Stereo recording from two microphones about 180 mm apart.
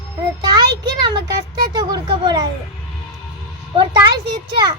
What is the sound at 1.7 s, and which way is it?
Speech, 25° right (ahead or behind).